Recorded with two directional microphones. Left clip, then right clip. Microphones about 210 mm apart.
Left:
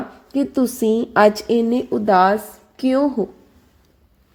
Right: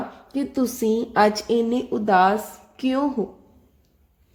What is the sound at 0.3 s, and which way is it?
A woman's voice, 10° left (ahead or behind).